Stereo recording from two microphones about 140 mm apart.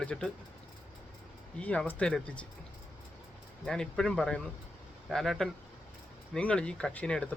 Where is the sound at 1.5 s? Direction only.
10° left (ahead or behind).